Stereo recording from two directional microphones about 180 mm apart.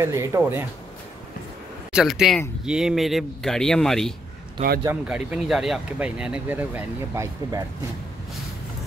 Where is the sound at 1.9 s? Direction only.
5° right (ahead or behind).